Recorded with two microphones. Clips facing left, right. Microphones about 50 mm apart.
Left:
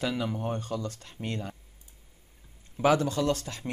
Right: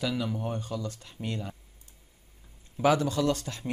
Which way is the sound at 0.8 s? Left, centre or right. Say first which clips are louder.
Left 1 dB; left.